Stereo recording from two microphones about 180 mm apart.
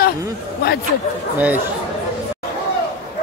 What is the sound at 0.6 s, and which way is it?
Speech, 60° left (ahead or behind).